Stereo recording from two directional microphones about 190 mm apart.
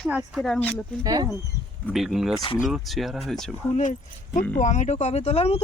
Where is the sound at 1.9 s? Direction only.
Centre (ahead or behind).